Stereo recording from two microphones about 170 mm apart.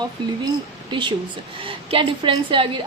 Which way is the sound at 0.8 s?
30° right (ahead or behind).